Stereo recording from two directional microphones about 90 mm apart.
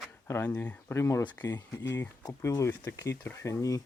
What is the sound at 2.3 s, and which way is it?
Speech, 40° left (ahead or behind).